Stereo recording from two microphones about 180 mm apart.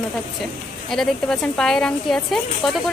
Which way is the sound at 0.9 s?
5° left (ahead or behind).